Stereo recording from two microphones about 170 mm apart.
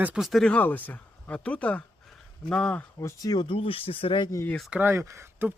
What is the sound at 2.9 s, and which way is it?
Speech, 20° left (ahead or behind).